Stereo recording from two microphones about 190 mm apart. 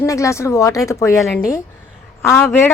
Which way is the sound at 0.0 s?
15° left (ahead or behind).